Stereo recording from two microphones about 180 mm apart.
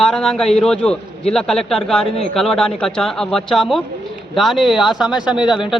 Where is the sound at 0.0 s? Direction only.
5° left (ahead or behind).